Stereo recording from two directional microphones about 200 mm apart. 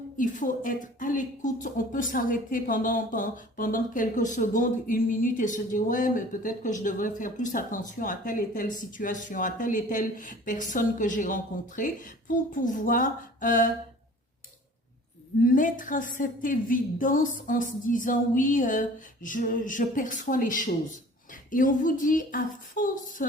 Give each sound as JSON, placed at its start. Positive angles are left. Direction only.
{"t": 0.2, "sound": "speech", "side_deg": 40}
{"t": 15.4, "sound": "speech", "side_deg": 40}